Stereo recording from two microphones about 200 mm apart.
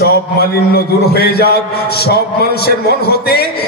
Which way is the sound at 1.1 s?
55° left (ahead or behind).